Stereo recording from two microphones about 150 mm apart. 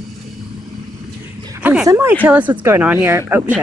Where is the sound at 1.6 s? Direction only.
10° right (ahead or behind).